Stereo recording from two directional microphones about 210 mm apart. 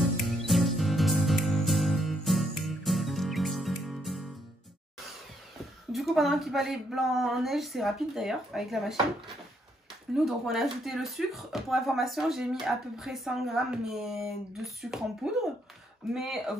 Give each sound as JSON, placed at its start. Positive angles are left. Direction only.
{"t": 0.5, "sound": "music", "side_deg": 0}
{"t": 5.9, "sound": "speech", "side_deg": 0}
{"t": 10.1, "sound": "speech", "side_deg": 0}